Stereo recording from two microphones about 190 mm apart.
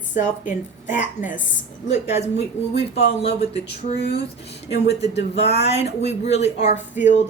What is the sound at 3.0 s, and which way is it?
Speech, 65° left (ahead or behind).